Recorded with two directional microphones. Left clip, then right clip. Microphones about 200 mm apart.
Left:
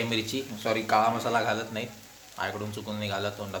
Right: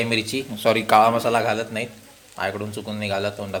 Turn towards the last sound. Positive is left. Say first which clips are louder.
# right 7 dB
turn(degrees=-20)  # may be behind; listen again after turning